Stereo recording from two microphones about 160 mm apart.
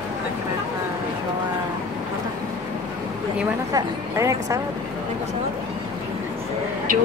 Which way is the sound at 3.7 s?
20° right (ahead or behind).